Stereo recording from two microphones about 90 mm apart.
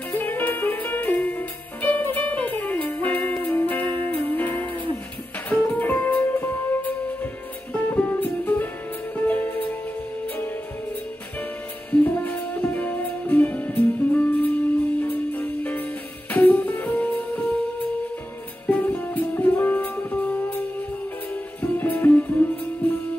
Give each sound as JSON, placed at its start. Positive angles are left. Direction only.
{"t": 0.1, "sound": "music", "side_deg": 20}
{"t": 11.9, "sound": "music", "side_deg": 20}